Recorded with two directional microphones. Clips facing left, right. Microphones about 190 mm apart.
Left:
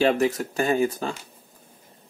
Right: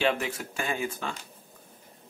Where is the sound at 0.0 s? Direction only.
40° left (ahead or behind).